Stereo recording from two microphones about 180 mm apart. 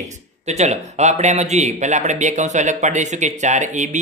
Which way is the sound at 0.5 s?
40° right (ahead or behind).